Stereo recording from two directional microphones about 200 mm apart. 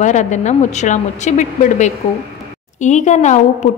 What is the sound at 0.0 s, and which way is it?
A woman's voice, 35° left (ahead or behind).